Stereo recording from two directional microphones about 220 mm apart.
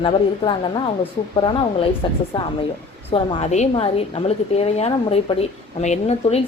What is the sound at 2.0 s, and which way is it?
A woman's voice, 20° left (ahead or behind).